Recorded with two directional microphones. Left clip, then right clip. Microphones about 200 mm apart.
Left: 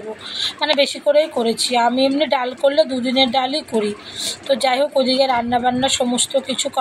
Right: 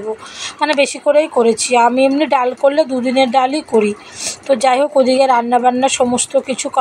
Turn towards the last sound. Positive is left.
turn(degrees=-35)  # may be behind; listen again after turning